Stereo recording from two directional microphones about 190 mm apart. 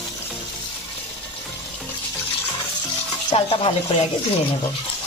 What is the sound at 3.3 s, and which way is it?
Speech, 30° left (ahead or behind).